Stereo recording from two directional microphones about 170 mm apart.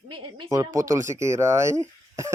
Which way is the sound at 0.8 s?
20° right (ahead or behind).